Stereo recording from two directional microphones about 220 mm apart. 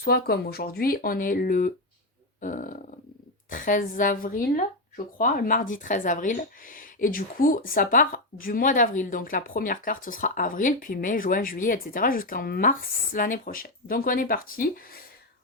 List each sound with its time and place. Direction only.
0.0 s speech: 45° left (ahead or behind)